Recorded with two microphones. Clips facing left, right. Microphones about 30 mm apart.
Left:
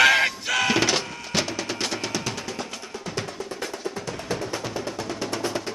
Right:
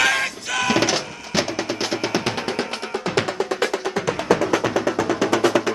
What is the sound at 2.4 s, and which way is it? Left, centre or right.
Music, right.